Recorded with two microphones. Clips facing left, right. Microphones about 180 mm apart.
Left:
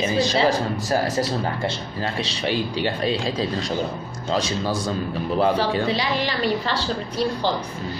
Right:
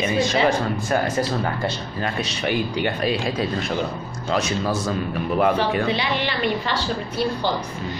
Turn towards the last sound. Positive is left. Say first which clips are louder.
# even
turn(degrees=35)  # may be behind; listen again after turning